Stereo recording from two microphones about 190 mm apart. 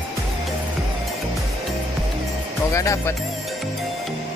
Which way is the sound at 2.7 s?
15° left (ahead or behind).